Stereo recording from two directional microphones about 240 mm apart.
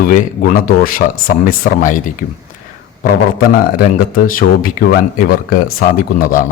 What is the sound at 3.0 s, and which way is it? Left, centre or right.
A man's voice, left.